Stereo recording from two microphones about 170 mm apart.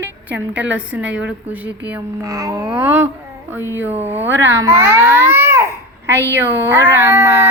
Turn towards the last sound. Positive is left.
turn(degrees=-15)  # may be behind; listen again after turning